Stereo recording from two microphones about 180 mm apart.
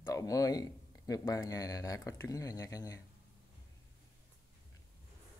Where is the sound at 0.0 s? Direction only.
20° left (ahead or behind).